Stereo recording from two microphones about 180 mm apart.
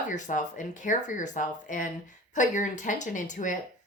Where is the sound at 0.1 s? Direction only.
45° left (ahead or behind).